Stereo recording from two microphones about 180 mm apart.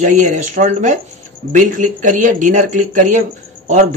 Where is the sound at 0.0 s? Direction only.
45° right (ahead or behind).